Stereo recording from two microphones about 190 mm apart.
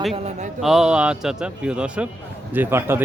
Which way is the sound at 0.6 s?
Centre (ahead or behind).